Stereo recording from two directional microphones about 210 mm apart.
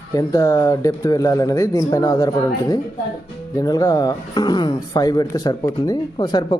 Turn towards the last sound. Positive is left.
turn(degrees=20)  # may be behind; listen again after turning